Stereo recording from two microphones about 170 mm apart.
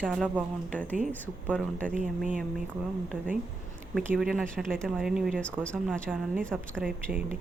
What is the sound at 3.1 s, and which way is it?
Speech, 5° left (ahead or behind).